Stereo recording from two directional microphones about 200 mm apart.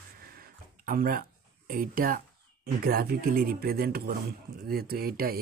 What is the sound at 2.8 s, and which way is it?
Speech, 50° right (ahead or behind).